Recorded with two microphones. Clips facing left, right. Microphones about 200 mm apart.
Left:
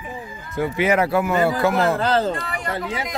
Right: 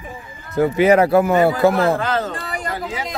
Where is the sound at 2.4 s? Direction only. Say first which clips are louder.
Right 1 dB; 30° right (ahead or behind).